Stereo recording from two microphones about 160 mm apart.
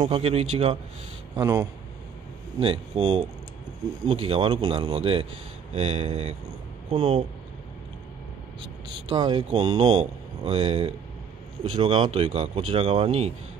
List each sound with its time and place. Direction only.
0.0 s speech: 40° right (ahead or behind)
1.3 s speech: 20° right (ahead or behind)
2.6 s speech: 35° right (ahead or behind)
9.1 s speech: 25° right (ahead or behind)
9.5 s speech: 40° right (ahead or behind)